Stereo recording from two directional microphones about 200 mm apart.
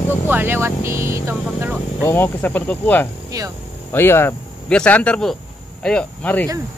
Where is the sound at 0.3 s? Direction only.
10° right (ahead or behind).